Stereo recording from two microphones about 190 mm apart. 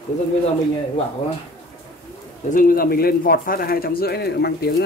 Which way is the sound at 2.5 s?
50° left (ahead or behind).